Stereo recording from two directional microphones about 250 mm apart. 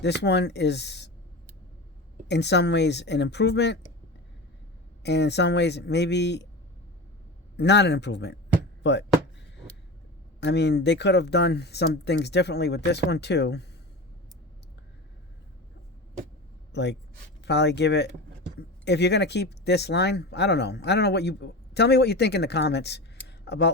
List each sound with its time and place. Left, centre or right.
0.0 s speech: left
2.2 s speech: left
5.0 s speech: left
7.5 s speech: left
8.8 s chopping: left
10.4 s speech: left
16.7 s speech: left